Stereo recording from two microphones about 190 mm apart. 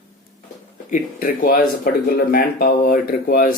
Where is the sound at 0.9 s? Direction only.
45° left (ahead or behind).